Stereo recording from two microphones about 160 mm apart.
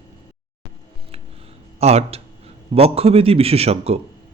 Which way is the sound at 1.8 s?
40° right (ahead or behind).